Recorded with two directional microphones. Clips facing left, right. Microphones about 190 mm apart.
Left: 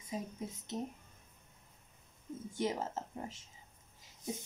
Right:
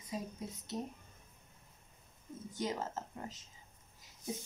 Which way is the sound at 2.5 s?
20° left (ahead or behind).